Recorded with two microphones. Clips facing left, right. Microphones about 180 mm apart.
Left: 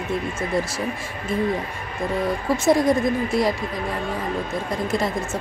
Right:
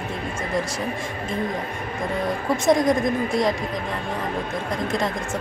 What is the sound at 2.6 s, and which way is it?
Speech, 5° left (ahead or behind).